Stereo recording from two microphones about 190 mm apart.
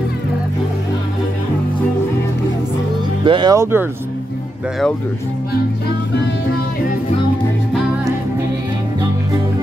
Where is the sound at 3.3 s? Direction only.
25° right (ahead or behind).